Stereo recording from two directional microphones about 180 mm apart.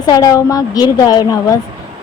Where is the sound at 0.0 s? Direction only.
20° left (ahead or behind).